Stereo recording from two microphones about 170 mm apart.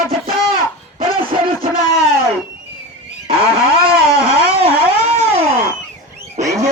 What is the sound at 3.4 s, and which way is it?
Vehicle, 35° right (ahead or behind).